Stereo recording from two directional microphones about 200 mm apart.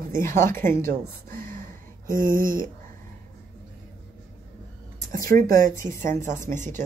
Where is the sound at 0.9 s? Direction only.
45° right (ahead or behind).